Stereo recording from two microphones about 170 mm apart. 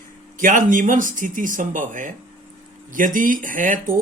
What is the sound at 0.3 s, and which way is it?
Speech, 50° right (ahead or behind).